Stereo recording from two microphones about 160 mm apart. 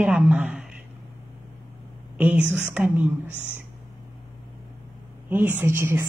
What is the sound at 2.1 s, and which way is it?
Speech, 10° right (ahead or behind).